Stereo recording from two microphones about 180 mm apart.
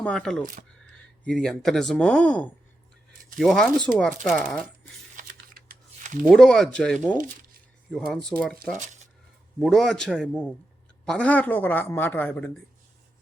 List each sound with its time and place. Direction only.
0.0 s speech: 5° left (ahead or behind)
5.1 s typing: 45° right (ahead or behind)
6.2 s speech: centre (ahead or behind)
9.6 s speech: centre (ahead or behind)